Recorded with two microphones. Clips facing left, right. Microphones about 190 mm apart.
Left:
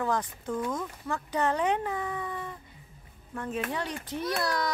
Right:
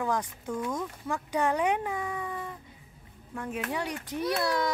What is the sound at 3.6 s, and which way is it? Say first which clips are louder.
Speech: right 1 dB; 10° right (ahead or behind).